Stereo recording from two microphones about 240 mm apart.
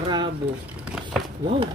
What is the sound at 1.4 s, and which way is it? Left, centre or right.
Speech, right.